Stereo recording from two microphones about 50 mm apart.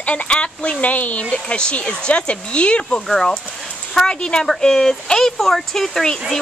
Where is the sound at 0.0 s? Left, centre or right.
Left.